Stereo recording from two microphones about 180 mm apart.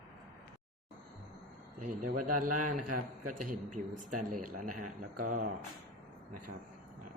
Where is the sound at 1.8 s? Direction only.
45° right (ahead or behind).